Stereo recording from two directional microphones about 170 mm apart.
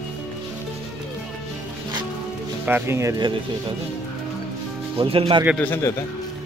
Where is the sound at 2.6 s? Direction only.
15° right (ahead or behind).